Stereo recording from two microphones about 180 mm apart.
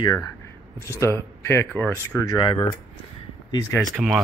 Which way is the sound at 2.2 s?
25° left (ahead or behind).